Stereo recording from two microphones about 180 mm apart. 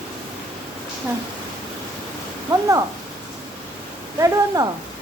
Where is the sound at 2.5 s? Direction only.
20° right (ahead or behind).